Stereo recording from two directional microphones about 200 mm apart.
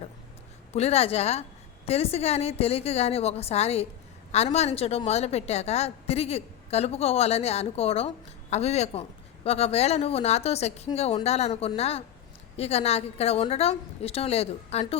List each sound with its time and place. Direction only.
0.7 s a woman's voice: 30° left (ahead or behind)